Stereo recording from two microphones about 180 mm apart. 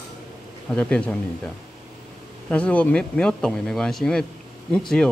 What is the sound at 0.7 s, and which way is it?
Speech, 5° left (ahead or behind).